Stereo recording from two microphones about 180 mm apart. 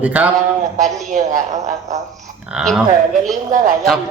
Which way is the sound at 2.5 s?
Centre (ahead or behind).